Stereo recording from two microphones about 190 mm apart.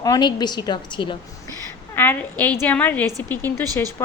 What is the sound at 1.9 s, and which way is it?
A woman's voice, 10° left (ahead or behind).